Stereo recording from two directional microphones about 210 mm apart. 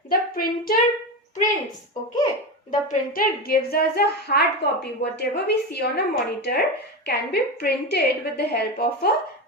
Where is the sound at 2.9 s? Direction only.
40° left (ahead or behind).